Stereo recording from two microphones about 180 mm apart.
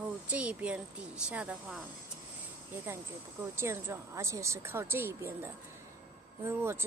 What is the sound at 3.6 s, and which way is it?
A woman's voice, 15° right (ahead or behind).